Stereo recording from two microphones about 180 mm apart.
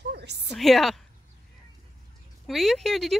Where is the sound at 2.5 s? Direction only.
Centre (ahead or behind).